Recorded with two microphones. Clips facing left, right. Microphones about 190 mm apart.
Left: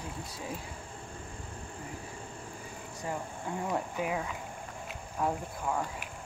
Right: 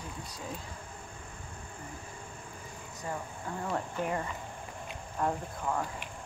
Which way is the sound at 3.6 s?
10° left (ahead or behind).